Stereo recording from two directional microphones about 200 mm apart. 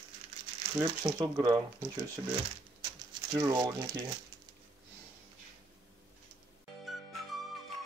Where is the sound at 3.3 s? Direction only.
20° right (ahead or behind).